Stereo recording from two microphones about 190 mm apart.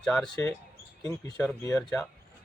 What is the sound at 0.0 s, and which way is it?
Speech, 5° left (ahead or behind).